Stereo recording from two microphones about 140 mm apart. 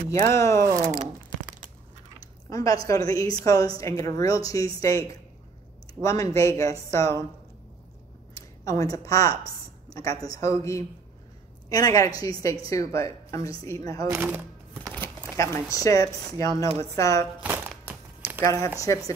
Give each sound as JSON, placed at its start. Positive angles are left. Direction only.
{"t": 0.1, "sound": "speech", "side_deg": 20}
{"t": 2.5, "sound": "speech", "side_deg": 25}
{"t": 8.4, "sound": "speech", "side_deg": 25}
{"t": 14.0, "sound": "a sound", "side_deg": -20}
{"t": 15.0, "sound": "speech", "side_deg": 20}
{"t": 17.4, "sound": "music", "side_deg": -10}
{"t": 18.4, "sound": "speech", "side_deg": 20}